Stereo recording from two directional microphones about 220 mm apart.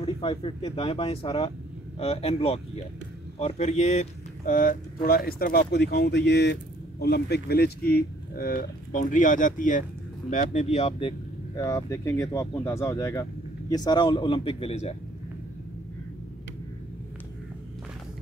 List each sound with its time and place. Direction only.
0.0 s speech: 25° left (ahead or behind)